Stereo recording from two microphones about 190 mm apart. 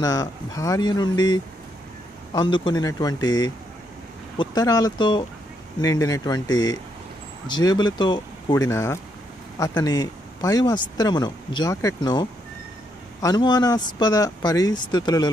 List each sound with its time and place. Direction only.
0.0 s speech: 20° left (ahead or behind)